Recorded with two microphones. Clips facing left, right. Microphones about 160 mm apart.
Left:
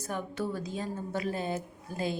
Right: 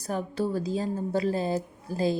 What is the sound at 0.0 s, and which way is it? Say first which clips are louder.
A woman's voice: right 5 dB; 35° right (ahead or behind).